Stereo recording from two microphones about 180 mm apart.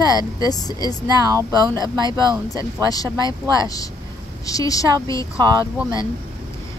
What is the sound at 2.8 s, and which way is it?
Speech, 20° left (ahead or behind).